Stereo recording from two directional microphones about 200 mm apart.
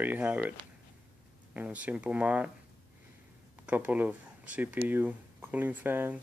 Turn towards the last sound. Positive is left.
turn(degrees=-10)  # may be behind; listen again after turning